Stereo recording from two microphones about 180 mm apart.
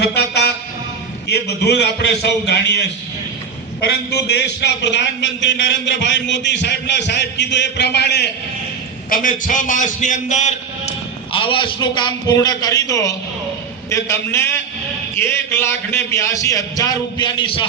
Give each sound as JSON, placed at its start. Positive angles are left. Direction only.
{"t": 0.0, "sound": "a sound", "side_deg": 65}
{"t": 1.3, "sound": "a man's voice", "side_deg": 65}
{"t": 4.4, "sound": "a man's voice", "side_deg": 70}
{"t": 9.0, "sound": "a man's voice", "side_deg": 50}